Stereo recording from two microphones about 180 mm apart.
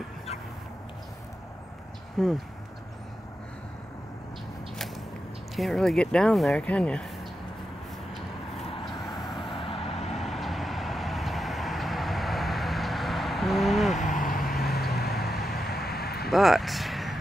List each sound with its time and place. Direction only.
2.2 s speech: centre (ahead or behind)
5.6 s speech: centre (ahead or behind)
9.5 s vehicle: 30° left (ahead or behind)
10.1 s vehicle: centre (ahead or behind)
14.0 s vehicle: 50° left (ahead or behind)
14.7 s vehicle: 60° left (ahead or behind)
16.3 s vehicle: centre (ahead or behind)